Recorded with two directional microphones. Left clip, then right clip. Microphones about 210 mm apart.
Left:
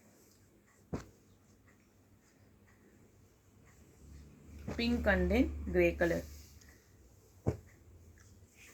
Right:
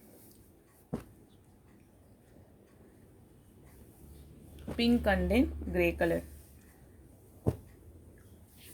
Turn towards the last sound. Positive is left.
turn(degrees=-45)  # may be behind; listen again after turning